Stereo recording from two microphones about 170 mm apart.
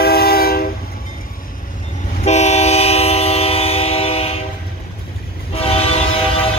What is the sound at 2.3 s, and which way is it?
Train, 40° left (ahead or behind).